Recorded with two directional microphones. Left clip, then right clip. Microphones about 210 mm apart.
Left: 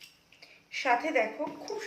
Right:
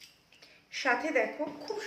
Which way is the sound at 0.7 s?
15° right (ahead or behind).